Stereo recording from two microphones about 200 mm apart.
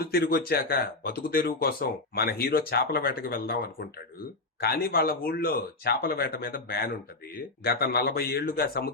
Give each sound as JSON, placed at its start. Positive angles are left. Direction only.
{"t": 0.0, "sound": "speech", "side_deg": 50}